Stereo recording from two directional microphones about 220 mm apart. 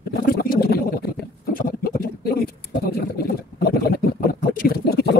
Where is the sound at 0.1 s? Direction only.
45° left (ahead or behind).